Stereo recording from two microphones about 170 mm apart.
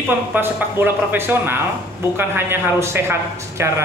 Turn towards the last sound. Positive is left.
turn(degrees=-15)  # may be behind; listen again after turning